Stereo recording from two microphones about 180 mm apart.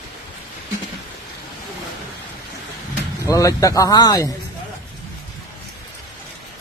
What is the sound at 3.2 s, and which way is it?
Speech, 15° left (ahead or behind).